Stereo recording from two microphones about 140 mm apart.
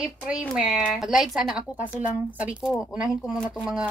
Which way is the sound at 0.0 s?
10° right (ahead or behind).